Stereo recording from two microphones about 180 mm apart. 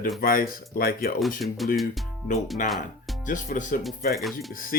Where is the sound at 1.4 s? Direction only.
Centre (ahead or behind).